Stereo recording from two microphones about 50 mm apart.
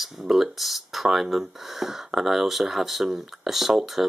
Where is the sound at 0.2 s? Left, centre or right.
Centre.